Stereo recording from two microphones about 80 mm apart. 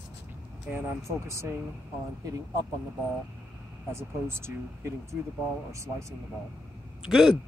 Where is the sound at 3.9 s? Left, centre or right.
Right.